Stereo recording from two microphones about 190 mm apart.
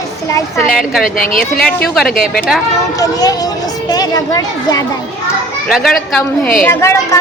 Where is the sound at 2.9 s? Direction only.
20° left (ahead or behind).